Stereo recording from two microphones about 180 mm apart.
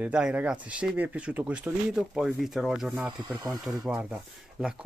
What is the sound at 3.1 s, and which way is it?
Speech, 25° right (ahead or behind).